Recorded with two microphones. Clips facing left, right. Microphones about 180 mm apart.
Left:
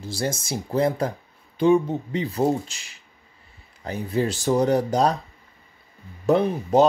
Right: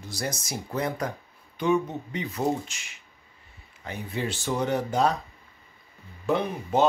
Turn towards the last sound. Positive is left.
turn(degrees=40)  # may be behind; listen again after turning